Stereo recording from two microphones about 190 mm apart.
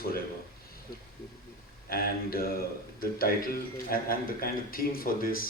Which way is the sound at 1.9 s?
50° left (ahead or behind).